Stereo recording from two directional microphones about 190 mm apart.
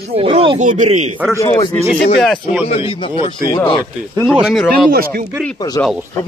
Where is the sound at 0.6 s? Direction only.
40° right (ahead or behind).